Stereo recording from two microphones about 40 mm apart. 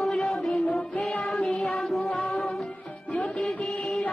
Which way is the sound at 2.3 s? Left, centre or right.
Left.